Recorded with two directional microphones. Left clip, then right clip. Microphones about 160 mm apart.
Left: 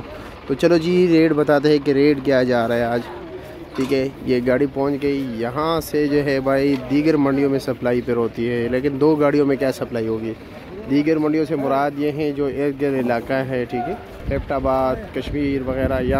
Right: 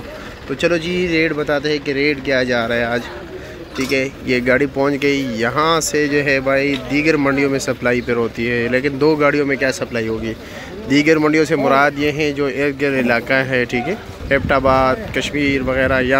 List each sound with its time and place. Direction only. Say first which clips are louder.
0.6 s speech: left 1 dB; 35° left (ahead or behind); by 4.8 s 15° left (ahead or behind)
4.8 s speech: right 4 dB; 5° left (ahead or behind); by 10.0 s 25° left (ahead or behind)
10.9 s speech: right 5 dB; 5° left (ahead or behind)